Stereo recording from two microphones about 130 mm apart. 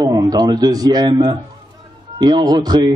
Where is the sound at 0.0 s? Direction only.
30° right (ahead or behind).